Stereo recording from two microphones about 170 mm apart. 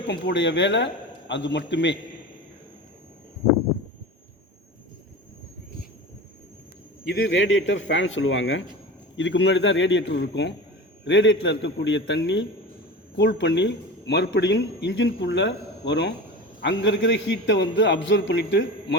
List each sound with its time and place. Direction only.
0.1 s speech: 90° left
7.3 s speech: 90° left